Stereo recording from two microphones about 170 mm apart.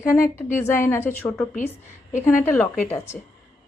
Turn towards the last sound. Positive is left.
turn(degrees=15)  # may be behind; listen again after turning